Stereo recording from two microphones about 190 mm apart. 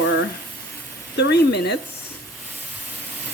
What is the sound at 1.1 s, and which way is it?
Speech, 60° left (ahead or behind).